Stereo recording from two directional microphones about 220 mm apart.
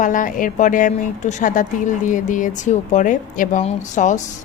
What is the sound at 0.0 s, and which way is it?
A woman's voice, 35° left (ahead or behind).